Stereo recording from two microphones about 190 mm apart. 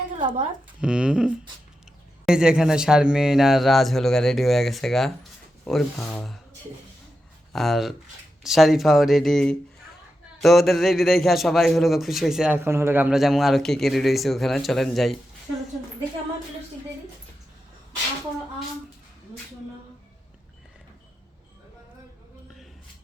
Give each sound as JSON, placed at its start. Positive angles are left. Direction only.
{"t": 0.2, "sound": "speech", "side_deg": -25}
{"t": 0.8, "sound": "a man's voice", "side_deg": -5}
{"t": 7.5, "sound": "a man's voice", "side_deg": 0}